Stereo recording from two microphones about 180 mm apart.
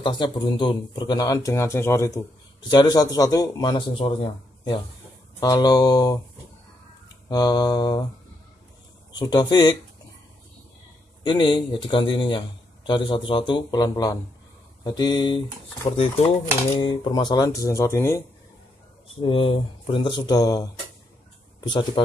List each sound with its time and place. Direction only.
0.0 s a man's voice: 25° left (ahead or behind)
7.2 s a man's voice: 25° left (ahead or behind)
9.2 s a man's voice: 25° left (ahead or behind)
11.2 s a man's voice: 25° left (ahead or behind)
16.8 s speech: 25° left (ahead or behind)
19.2 s a man's voice: 30° left (ahead or behind)